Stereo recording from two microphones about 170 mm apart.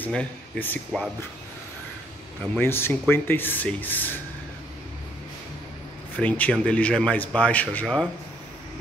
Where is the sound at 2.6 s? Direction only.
15° left (ahead or behind).